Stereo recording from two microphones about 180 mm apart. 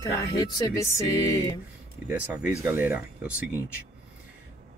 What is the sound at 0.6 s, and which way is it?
Music, 20° left (ahead or behind).